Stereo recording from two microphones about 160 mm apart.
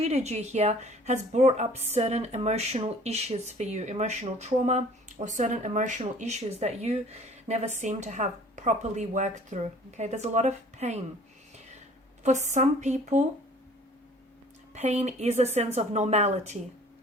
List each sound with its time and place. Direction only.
0.0 s speech: 40° right (ahead or behind)
12.2 s speech: 50° right (ahead or behind)
14.7 s speech: 45° right (ahead or behind)